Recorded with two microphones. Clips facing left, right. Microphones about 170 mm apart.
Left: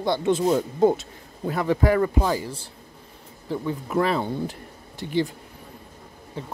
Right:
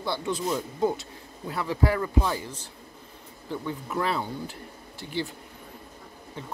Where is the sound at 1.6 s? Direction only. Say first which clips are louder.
Left 6 dB; 45° left (ahead or behind).